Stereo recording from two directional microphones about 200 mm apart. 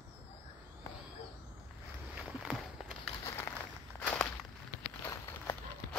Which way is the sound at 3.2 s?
15° left (ahead or behind).